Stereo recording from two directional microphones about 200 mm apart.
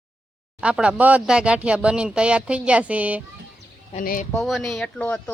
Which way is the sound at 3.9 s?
45° left (ahead or behind).